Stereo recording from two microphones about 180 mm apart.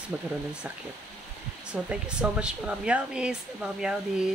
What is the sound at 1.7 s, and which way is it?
Speech, 5° right (ahead or behind).